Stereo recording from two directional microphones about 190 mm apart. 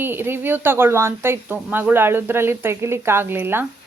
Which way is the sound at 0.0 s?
10° right (ahead or behind).